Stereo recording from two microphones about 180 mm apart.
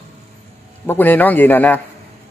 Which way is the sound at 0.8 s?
10° left (ahead or behind).